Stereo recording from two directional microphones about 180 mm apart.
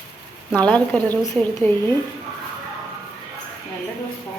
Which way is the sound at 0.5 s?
5° left (ahead or behind).